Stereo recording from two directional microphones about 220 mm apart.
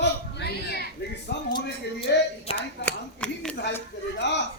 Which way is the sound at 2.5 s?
25° left (ahead or behind).